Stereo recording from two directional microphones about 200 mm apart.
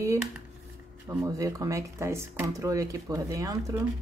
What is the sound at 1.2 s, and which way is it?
Speech, 15° right (ahead or behind).